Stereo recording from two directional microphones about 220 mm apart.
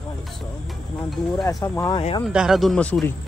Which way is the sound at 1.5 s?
15° left (ahead or behind).